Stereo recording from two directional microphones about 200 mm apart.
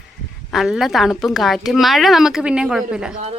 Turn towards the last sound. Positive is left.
turn(degrees=-5)  # may be behind; listen again after turning